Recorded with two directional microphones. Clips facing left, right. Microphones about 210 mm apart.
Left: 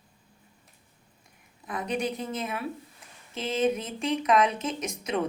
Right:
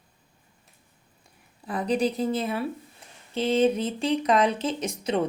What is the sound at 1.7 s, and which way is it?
Speech, 35° right (ahead or behind).